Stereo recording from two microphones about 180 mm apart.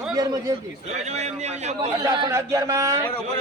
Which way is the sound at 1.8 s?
25° right (ahead or behind).